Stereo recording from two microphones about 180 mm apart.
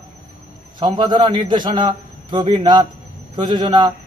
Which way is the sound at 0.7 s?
25° right (ahead or behind).